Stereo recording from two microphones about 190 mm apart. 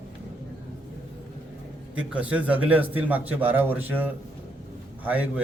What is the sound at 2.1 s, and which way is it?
A man's voice, 5° right (ahead or behind).